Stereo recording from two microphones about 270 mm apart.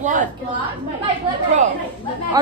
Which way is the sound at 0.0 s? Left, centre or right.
Right.